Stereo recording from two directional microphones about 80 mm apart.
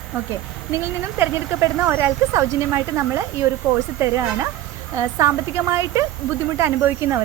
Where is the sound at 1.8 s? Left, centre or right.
Right.